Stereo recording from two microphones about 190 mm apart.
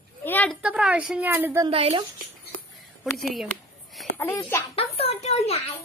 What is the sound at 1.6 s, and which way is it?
Speech, 30° right (ahead or behind).